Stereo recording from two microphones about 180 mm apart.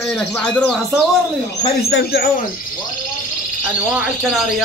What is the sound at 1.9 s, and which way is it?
Speech, 65° left (ahead or behind).